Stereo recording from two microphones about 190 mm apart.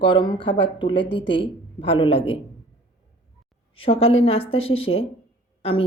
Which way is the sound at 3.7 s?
30° left (ahead or behind).